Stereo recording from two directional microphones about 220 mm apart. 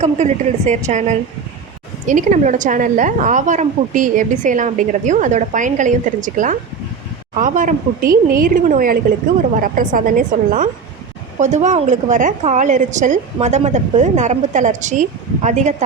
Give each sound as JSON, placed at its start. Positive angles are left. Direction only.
{"t": 0.0, "sound": "a woman's voice", "side_deg": -30}